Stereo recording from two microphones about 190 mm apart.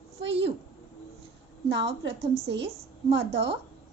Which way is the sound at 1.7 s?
65° right (ahead or behind).